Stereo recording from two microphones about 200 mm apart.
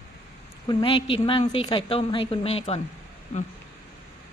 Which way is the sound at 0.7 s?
25° left (ahead or behind).